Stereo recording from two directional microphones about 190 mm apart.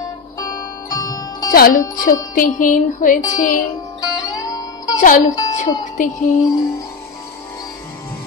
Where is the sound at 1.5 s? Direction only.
50° left (ahead or behind).